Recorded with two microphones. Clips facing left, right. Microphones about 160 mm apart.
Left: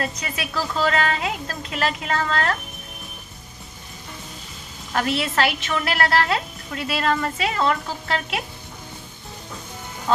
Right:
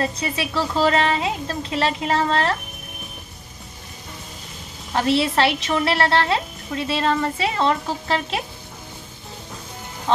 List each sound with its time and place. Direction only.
0.0 s a woman's voice: 25° right (ahead or behind)
4.9 s a woman's voice: 30° right (ahead or behind)